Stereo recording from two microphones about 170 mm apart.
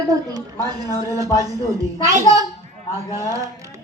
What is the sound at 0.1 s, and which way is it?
A man's voice, 20° right (ahead or behind).